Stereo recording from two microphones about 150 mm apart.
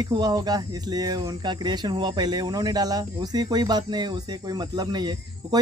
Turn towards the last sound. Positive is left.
turn(degrees=-25)  # may be behind; listen again after turning